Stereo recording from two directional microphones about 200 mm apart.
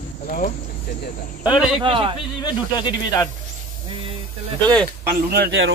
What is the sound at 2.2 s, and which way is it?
Speech, 25° left (ahead or behind).